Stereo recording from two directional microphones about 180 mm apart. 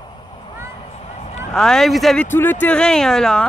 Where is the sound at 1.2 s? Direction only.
40° left (ahead or behind).